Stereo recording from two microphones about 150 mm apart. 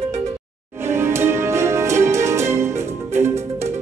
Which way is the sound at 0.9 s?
15° right (ahead or behind).